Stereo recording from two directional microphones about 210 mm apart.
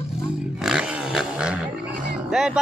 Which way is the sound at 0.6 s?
5° right (ahead or behind).